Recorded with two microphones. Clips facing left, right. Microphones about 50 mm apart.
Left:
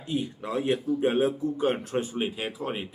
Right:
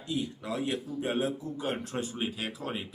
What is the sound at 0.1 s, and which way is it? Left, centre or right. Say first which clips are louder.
Speech: left 4 dB; left.